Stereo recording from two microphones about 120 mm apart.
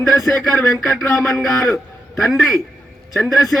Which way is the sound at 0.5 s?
25° left (ahead or behind).